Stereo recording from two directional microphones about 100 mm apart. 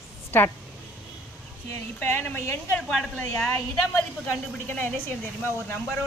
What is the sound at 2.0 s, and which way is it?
Speech, 20° left (ahead or behind).